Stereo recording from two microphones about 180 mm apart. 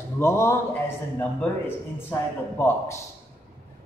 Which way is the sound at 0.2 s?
15° left (ahead or behind).